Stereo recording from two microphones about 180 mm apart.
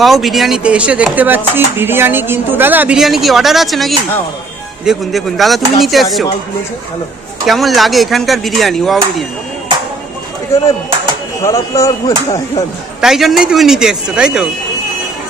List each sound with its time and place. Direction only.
0.0 s speech: centre (ahead or behind)
7.4 s speech: centre (ahead or behind)
11.4 s speech: 15° left (ahead or behind)
13.0 s speech: centre (ahead or behind)